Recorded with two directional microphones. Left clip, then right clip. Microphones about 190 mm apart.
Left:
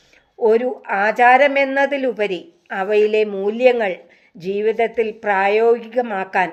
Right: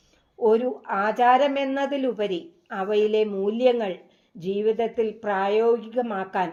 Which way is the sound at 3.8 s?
40° left (ahead or behind).